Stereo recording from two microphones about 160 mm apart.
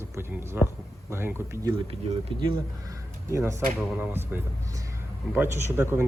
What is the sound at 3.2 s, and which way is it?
Speech, 20° right (ahead or behind).